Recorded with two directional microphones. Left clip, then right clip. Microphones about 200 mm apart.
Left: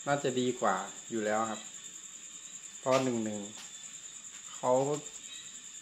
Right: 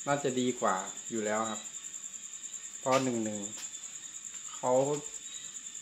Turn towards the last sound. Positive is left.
turn(degrees=0)  # may be behind; listen again after turning